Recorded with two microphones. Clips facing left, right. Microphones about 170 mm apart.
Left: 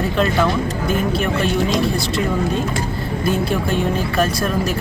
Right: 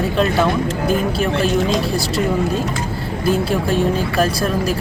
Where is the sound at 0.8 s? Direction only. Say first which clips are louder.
Right 1 dB; 35° right (ahead or behind).